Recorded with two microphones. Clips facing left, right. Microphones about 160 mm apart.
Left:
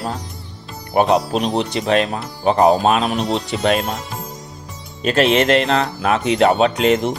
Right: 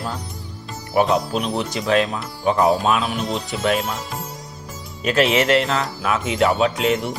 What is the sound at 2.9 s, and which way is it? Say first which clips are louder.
Speech: left 4 dB; 80° left.